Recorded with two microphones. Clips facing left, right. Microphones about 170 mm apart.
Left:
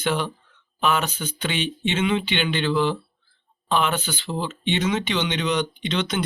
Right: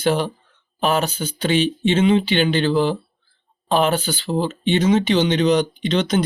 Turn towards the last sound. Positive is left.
turn(degrees=-40)  # may be behind; listen again after turning